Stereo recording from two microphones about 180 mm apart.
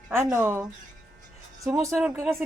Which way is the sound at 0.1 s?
15° right (ahead or behind).